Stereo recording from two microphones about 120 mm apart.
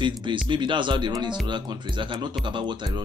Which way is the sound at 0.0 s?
40° right (ahead or behind).